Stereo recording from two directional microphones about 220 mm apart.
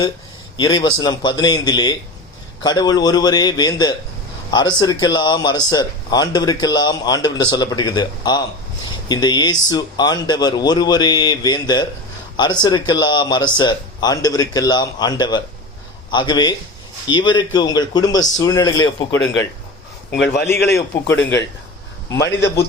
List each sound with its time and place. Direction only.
0.5 s a man's voice: 20° left (ahead or behind)
20.7 s a man's voice: 10° left (ahead or behind)